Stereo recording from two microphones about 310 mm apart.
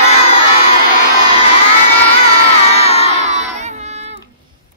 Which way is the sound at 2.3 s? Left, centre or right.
Centre.